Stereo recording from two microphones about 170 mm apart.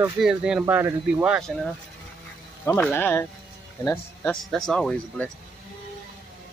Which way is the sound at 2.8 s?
10° left (ahead or behind).